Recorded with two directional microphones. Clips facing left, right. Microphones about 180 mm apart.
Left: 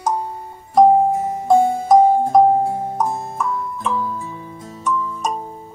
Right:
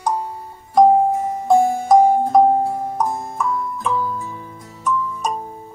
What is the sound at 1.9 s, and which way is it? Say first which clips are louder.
Music: left 1 dB; centre (ahead or behind).